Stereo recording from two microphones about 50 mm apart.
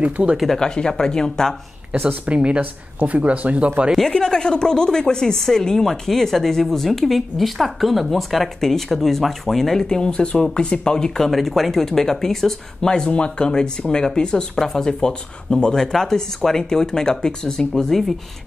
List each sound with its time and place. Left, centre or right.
0.0 s speech: right
0.6 s speech: centre
2.0 s speech: right
4.1 s speech: centre
11.2 s speech: centre
12.9 s speech: centre